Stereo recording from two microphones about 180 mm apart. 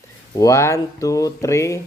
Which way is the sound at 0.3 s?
15° left (ahead or behind).